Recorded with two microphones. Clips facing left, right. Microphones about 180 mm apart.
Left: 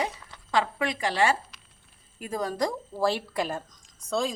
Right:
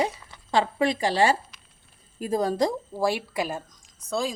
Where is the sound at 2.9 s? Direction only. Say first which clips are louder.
Right 1 dB; 10° right (ahead or behind).